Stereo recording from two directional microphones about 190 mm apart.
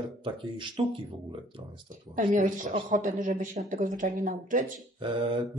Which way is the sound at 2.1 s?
45° right (ahead or behind).